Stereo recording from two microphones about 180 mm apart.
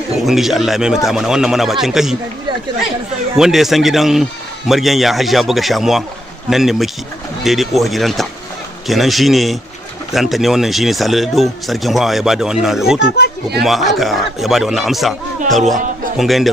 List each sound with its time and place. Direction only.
0.3 s speech: centre (ahead or behind)
3.3 s a man's voice: centre (ahead or behind)